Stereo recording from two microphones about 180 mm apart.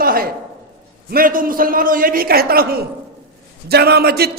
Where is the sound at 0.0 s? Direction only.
55° right (ahead or behind).